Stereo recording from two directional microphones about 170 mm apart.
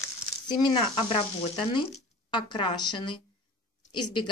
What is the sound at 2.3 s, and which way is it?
Speech, 30° left (ahead or behind).